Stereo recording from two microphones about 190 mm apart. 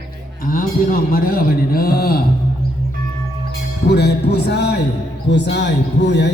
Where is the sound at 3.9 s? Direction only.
60° left (ahead or behind).